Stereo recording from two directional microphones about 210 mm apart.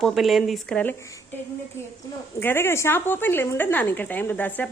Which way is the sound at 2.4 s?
10° left (ahead or behind).